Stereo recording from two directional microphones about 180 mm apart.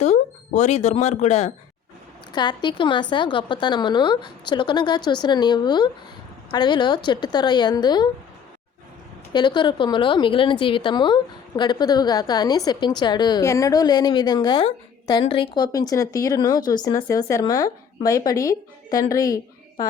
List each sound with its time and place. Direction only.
0.0 s speech: 40° left (ahead or behind)
2.3 s a woman's voice: 25° left (ahead or behind)
9.3 s a woman's voice: 25° left (ahead or behind)